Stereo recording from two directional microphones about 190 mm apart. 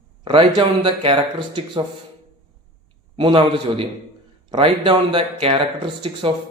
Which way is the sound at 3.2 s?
25° right (ahead or behind).